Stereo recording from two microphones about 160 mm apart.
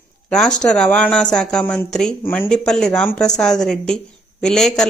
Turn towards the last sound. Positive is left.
turn(degrees=5)  # may be behind; listen again after turning